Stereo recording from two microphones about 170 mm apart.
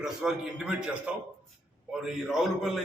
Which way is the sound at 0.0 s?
5° right (ahead or behind).